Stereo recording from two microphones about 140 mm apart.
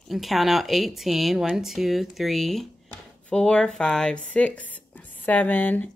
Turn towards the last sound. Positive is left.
turn(degrees=10)  # may be behind; listen again after turning